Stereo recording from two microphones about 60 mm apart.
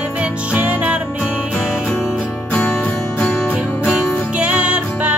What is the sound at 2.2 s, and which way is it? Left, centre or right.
Music, left.